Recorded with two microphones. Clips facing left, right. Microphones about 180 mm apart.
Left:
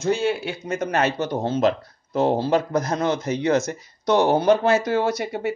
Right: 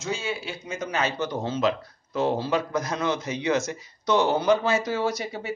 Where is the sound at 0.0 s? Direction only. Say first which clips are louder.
Left 8 dB; 60° left (ahead or behind).